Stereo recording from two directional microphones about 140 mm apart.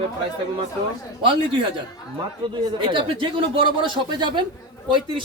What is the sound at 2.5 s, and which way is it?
Speech, 35° right (ahead or behind).